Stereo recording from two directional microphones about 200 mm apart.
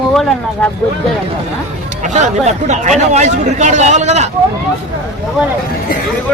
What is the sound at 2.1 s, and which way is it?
Speech, 35° right (ahead or behind).